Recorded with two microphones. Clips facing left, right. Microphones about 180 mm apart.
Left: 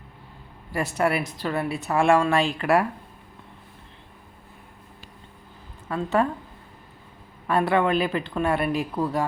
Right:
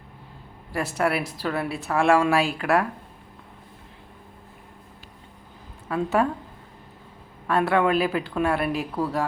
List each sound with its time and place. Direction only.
0.7 s speech: centre (ahead or behind)
5.9 s a woman's voice: 5° right (ahead or behind)
7.4 s speech: centre (ahead or behind)